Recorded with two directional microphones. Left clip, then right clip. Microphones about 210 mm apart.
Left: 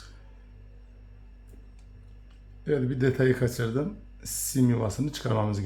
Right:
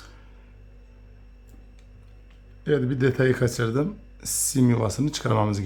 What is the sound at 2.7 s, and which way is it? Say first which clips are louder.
Speech: right 4 dB; 25° right (ahead or behind).